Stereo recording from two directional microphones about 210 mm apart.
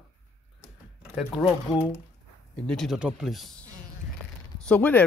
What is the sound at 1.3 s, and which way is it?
Speech, 20° left (ahead or behind).